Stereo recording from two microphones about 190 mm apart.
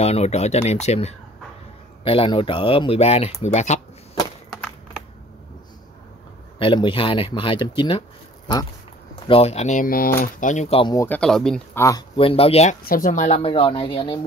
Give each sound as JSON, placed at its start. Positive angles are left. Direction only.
{"t": 0.0, "sound": "speech", "side_deg": 35}
{"t": 6.6, "sound": "speech", "side_deg": 25}
{"t": 9.3, "sound": "speech", "side_deg": 35}
{"t": 11.1, "sound": "speech", "side_deg": 5}
{"t": 12.2, "sound": "speech", "side_deg": 30}
{"t": 12.8, "sound": "speech", "side_deg": 45}